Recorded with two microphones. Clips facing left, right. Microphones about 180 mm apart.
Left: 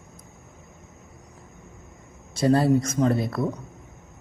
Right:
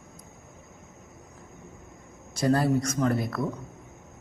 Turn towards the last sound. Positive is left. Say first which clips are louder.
# left 3 dB
turn(degrees=25)  # may be behind; listen again after turning